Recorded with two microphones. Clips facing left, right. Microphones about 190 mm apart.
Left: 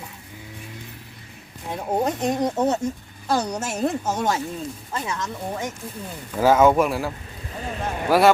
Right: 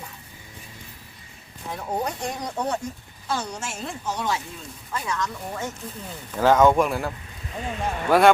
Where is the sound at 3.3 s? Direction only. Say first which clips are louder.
Left 6 dB; 40° left (ahead or behind).